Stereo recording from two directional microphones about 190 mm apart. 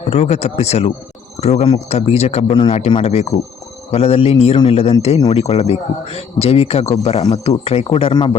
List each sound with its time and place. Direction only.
0.1 s a man's voice: 35° left (ahead or behind)